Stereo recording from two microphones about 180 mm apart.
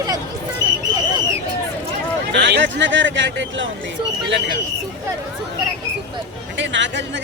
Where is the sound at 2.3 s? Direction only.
75° right (ahead or behind).